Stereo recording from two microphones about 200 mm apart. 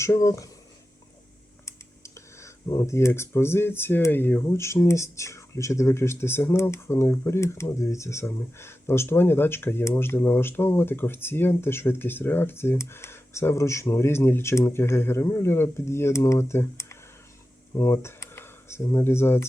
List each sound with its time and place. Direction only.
0.0 s speech: 15° left (ahead or behind)
1.6 s speech: 15° left (ahead or behind)